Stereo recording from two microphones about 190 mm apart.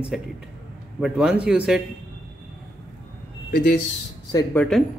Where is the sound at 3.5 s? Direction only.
55° left (ahead or behind).